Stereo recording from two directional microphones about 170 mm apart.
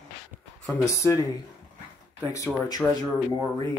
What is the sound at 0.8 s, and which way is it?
Speech, 20° left (ahead or behind).